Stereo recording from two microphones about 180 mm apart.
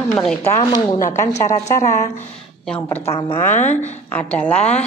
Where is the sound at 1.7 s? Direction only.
40° left (ahead or behind).